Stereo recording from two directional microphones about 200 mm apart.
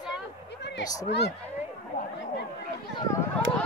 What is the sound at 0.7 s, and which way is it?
Speech, 55° left (ahead or behind).